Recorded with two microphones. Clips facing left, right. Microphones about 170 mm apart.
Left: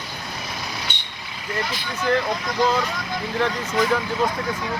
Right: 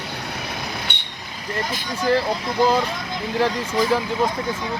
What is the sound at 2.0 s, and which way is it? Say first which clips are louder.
Speech: right 2 dB; 30° right (ahead or behind).